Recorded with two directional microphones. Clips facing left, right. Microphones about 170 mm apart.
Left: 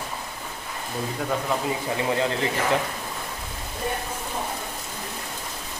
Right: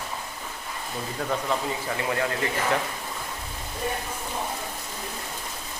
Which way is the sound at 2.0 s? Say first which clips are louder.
Left 3 dB; 20° left (ahead or behind).